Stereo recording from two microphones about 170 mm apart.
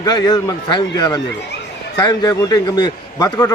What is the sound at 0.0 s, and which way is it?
A man's voice, 25° left (ahead or behind).